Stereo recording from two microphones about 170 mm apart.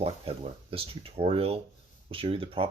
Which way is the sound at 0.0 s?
35° right (ahead or behind).